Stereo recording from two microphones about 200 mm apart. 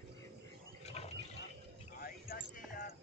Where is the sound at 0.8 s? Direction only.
30° left (ahead or behind).